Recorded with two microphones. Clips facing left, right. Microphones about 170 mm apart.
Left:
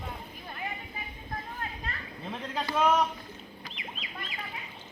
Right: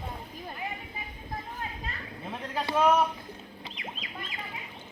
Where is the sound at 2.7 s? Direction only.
10° right (ahead or behind).